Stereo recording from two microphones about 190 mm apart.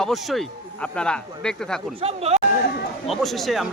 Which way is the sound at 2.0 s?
35° right (ahead or behind).